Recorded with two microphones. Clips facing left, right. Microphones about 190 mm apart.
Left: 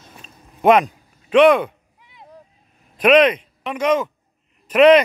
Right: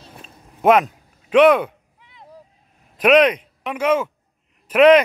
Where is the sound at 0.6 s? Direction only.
5° right (ahead or behind).